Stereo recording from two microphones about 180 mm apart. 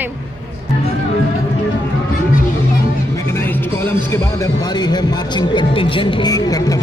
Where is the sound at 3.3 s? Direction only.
10° left (ahead or behind).